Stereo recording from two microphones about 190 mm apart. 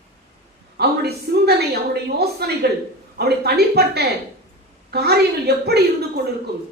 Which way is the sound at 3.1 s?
55° right (ahead or behind).